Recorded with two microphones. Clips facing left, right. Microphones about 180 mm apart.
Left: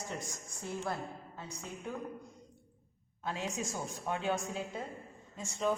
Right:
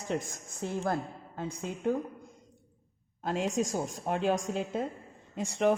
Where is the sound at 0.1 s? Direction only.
55° right (ahead or behind).